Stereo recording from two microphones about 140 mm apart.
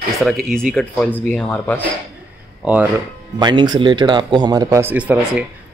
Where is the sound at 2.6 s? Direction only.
10° right (ahead or behind).